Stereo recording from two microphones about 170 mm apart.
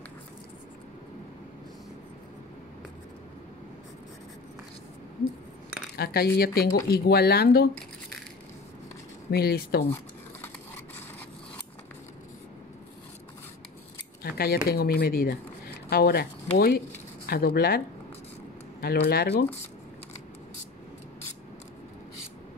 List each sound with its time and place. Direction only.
5.9 s speech: 65° left (ahead or behind)
9.3 s speech: 65° left (ahead or behind)
14.3 s speech: 65° left (ahead or behind)